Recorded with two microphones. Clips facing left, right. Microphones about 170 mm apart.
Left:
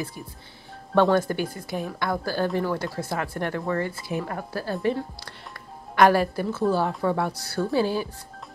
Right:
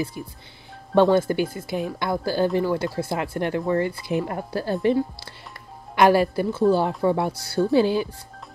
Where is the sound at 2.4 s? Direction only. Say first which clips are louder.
Right 4 dB; centre (ahead or behind); by 4.7 s 20° right (ahead or behind).